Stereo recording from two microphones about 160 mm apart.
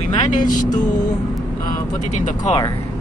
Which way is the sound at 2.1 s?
50° left (ahead or behind).